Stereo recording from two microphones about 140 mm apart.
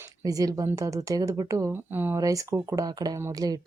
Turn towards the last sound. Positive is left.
turn(degrees=-25)  # may be behind; listen again after turning